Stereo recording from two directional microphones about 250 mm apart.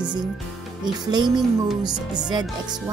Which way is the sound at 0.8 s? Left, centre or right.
Centre.